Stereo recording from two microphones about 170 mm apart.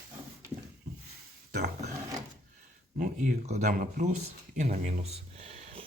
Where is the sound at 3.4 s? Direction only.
45° right (ahead or behind).